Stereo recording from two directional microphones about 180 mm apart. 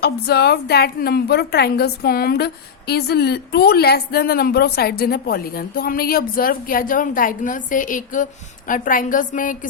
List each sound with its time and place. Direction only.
0.0 s a woman's voice: 65° left (ahead or behind); by 9.6 s 45° left (ahead or behind)